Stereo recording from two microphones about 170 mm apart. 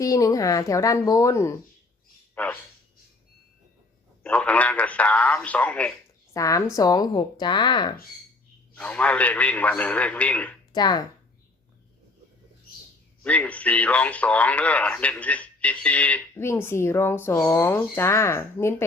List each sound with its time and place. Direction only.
0.0 s speech: 20° left (ahead or behind)
4.2 s speech: 5° left (ahead or behind)
6.3 s speech: 20° left (ahead or behind)
8.7 s speech: 10° left (ahead or behind)
10.7 s speech: 25° left (ahead or behind)
13.2 s speech: 10° left (ahead or behind)